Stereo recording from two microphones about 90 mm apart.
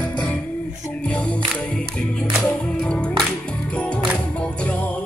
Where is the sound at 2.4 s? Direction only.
10° left (ahead or behind).